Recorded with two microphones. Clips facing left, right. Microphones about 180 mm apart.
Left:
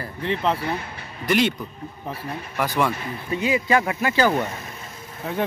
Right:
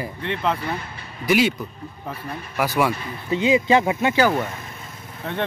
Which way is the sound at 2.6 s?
10° right (ahead or behind).